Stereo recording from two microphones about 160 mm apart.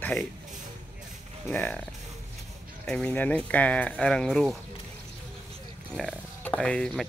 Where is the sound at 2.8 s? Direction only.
5° left (ahead or behind).